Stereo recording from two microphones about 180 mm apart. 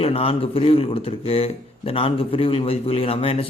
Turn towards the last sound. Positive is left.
turn(degrees=30)  # may be behind; listen again after turning